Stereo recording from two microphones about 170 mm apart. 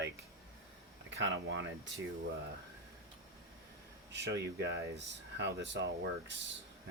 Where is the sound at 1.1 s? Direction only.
90° right.